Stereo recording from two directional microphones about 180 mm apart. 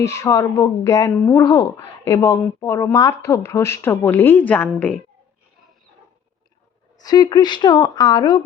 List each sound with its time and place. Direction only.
0.0 s speech: 15° left (ahead or behind)
7.0 s a woman's voice: 20° left (ahead or behind)